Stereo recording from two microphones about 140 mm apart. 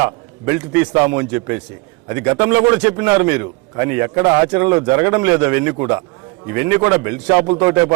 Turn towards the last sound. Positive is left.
turn(degrees=-15)  # may be behind; listen again after turning